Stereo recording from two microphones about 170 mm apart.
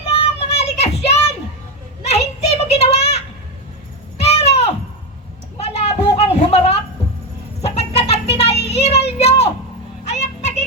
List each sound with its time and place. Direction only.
0.0 s child singing: 35° left (ahead or behind)
2.0 s children playing: 40° left (ahead or behind)
4.2 s a sound: 40° left (ahead or behind)
8.6 s child singing: 35° left (ahead or behind)
10.0 s music: 40° left (ahead or behind)